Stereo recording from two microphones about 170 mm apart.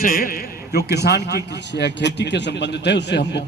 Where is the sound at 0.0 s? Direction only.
55° left (ahead or behind).